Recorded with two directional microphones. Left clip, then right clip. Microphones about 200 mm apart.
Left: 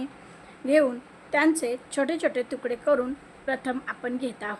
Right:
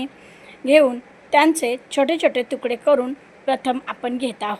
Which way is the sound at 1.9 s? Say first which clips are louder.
Right 8 dB; 15° right (ahead or behind).